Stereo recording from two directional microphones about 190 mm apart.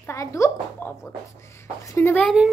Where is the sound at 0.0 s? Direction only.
15° left (ahead or behind).